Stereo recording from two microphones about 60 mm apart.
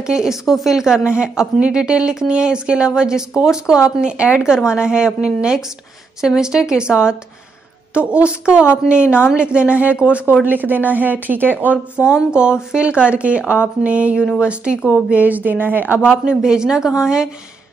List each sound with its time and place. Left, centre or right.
0.0 s a woman's voice: centre
10.4 s speech: right
12.4 s a woman's voice: centre; by 16.0 s right
16.4 s a woman's voice: centre